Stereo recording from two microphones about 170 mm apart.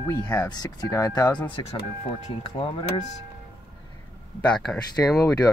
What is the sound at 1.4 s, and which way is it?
Speech, 30° left (ahead or behind).